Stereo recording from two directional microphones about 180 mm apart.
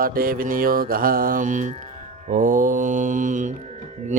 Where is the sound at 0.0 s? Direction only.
55° right (ahead or behind).